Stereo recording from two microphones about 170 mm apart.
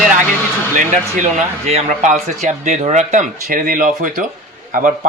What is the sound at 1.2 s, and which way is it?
Speech, 40° right (ahead or behind).